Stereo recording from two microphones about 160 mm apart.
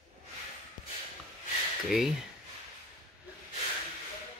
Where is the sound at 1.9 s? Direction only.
Centre (ahead or behind).